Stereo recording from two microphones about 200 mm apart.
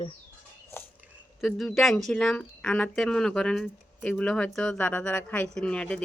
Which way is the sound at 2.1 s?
5° left (ahead or behind).